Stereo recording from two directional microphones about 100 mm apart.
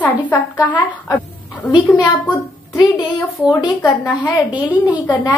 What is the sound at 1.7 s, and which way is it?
A child's voice, 45° left (ahead or behind).